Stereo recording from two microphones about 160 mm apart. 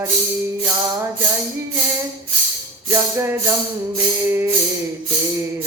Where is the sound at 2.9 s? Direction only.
15° right (ahead or behind).